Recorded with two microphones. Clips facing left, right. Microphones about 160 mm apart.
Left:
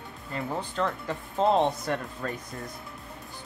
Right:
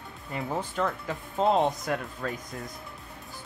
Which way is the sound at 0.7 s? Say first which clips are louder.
Even; centre (ahead or behind).